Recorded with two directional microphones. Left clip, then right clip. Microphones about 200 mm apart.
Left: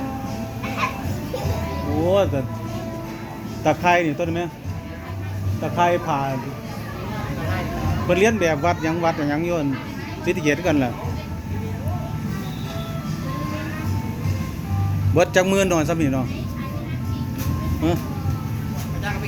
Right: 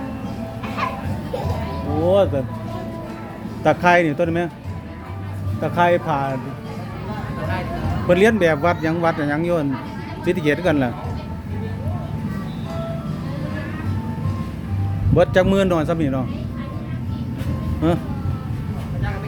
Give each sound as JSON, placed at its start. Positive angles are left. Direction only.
{"t": 2.0, "sound": "speech", "side_deg": -15}
{"t": 3.6, "sound": "speech", "side_deg": -25}
{"t": 5.6, "sound": "speech", "side_deg": -30}
{"t": 8.0, "sound": "speech", "side_deg": -30}
{"t": 15.1, "sound": "a man's voice", "side_deg": -10}
{"t": 17.8, "sound": "speech", "side_deg": -30}